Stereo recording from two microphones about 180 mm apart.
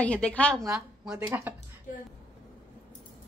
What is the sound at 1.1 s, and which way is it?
Speech, 15° right (ahead or behind).